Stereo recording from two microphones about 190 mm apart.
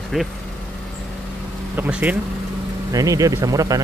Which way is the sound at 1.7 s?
10° right (ahead or behind).